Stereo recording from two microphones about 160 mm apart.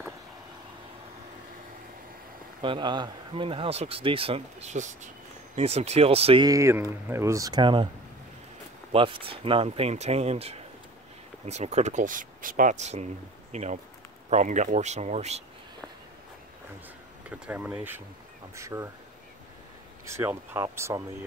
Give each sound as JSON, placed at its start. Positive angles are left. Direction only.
{"t": 2.6, "sound": "speech", "side_deg": -30}
{"t": 6.4, "sound": "speech", "side_deg": -20}
{"t": 8.9, "sound": "speech", "side_deg": -30}
{"t": 17.5, "sound": "speech", "side_deg": -10}
{"t": 20.1, "sound": "speech", "side_deg": -15}